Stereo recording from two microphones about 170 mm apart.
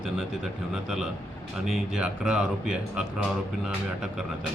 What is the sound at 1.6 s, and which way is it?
Mantra, centre (ahead or behind).